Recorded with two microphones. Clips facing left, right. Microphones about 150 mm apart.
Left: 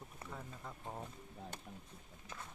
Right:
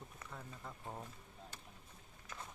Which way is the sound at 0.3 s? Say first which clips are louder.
Left 2 dB; 5° left (ahead or behind).